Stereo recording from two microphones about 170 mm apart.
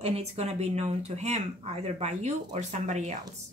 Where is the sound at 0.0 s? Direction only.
35° right (ahead or behind).